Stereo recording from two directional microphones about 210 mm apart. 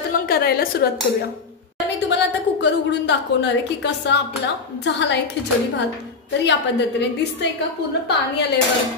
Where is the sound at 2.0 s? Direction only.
55° left (ahead or behind).